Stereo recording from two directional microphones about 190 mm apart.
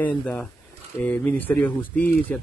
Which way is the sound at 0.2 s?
5° left (ahead or behind).